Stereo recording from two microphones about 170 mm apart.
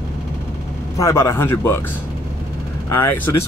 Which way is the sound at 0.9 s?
15° left (ahead or behind).